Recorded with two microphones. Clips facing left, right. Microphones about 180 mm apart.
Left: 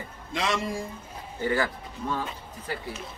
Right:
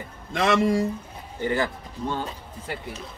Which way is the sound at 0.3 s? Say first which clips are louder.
Right 8 dB; 55° right (ahead or behind).